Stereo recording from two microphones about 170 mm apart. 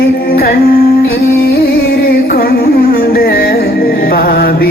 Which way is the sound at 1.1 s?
65° left (ahead or behind).